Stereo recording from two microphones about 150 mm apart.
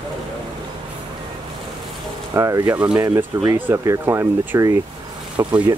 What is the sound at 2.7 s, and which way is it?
Speech, 10° right (ahead or behind).